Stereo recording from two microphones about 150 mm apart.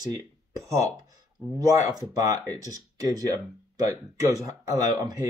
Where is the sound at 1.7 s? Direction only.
25° right (ahead or behind).